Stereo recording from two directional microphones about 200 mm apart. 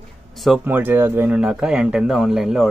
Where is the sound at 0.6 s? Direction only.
10° right (ahead or behind).